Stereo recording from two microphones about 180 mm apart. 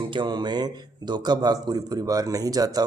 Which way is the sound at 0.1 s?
25° right (ahead or behind).